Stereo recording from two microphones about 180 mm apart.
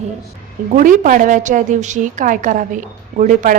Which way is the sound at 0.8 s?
50° right (ahead or behind).